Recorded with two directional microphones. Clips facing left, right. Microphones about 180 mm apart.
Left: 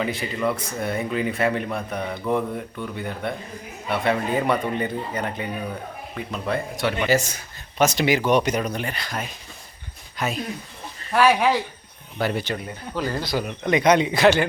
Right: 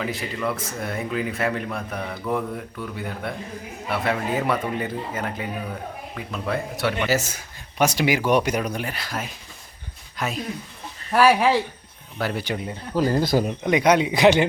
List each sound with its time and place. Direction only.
0.0 s speech: centre (ahead or behind)
12.5 s speech: 25° right (ahead or behind)
13.0 s speech: 40° right (ahead or behind)
13.7 s speech: 10° right (ahead or behind)